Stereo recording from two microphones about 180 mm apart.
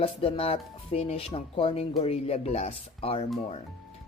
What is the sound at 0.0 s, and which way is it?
Speech, 30° left (ahead or behind).